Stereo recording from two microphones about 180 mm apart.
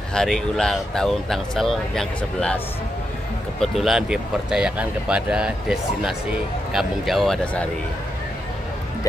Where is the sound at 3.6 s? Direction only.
Centre (ahead or behind).